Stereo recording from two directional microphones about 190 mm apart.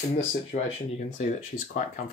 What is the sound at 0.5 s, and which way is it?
Speech, 40° left (ahead or behind).